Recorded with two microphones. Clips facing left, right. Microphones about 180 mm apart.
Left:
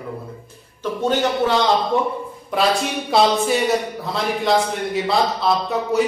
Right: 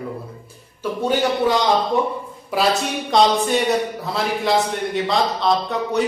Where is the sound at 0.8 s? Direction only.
10° right (ahead or behind).